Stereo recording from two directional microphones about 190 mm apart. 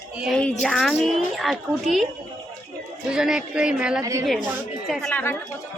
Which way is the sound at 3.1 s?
5° right (ahead or behind).